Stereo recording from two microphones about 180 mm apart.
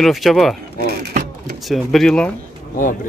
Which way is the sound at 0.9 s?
60° right (ahead or behind).